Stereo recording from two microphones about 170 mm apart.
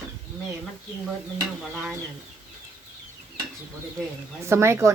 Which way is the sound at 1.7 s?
5° right (ahead or behind).